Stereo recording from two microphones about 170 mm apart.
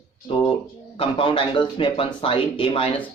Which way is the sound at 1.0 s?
30° left (ahead or behind).